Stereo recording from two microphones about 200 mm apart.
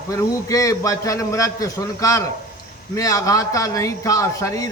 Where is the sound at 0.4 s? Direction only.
15° left (ahead or behind).